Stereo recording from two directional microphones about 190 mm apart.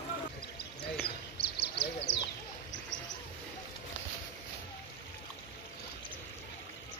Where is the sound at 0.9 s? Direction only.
60° left (ahead or behind).